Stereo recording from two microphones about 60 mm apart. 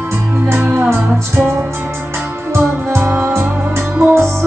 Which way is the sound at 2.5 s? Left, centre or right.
Right.